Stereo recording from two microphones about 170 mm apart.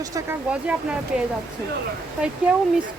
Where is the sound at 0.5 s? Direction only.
5° right (ahead or behind).